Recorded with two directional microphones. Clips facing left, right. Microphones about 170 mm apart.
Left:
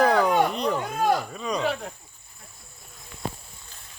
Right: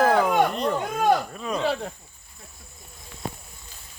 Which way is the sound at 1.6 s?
30° right (ahead or behind).